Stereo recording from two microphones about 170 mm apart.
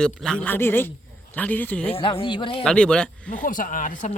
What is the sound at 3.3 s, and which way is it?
Speech, 55° left (ahead or behind).